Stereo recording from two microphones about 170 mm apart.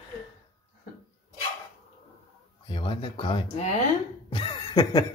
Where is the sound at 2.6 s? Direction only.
30° left (ahead or behind).